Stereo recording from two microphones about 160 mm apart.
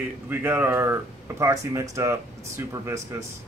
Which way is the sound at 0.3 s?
15° right (ahead or behind).